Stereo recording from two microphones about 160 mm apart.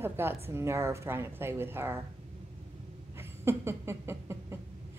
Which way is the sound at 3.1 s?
15° right (ahead or behind).